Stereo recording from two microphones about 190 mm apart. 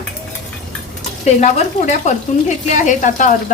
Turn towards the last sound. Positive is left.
turn(degrees=45)  # may be behind; listen again after turning